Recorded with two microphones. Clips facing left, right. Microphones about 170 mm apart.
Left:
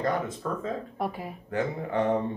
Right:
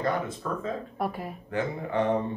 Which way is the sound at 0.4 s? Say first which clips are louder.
Even; 40° left (ahead or behind).